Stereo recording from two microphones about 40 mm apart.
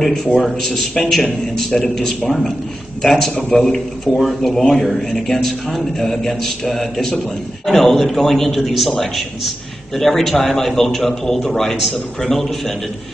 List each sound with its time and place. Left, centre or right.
0.0 s a man's voice: centre